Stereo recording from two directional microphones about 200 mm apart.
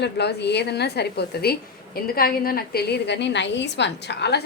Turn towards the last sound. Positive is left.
turn(degrees=55)  # may be behind; listen again after turning